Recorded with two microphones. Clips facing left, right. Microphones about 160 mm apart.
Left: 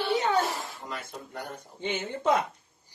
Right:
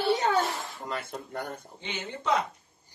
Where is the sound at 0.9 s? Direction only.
55° right (ahead or behind).